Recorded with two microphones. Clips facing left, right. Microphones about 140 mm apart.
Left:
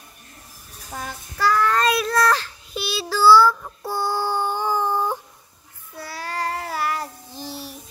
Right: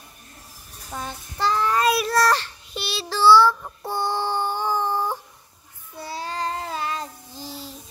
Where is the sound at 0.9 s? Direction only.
25° right (ahead or behind).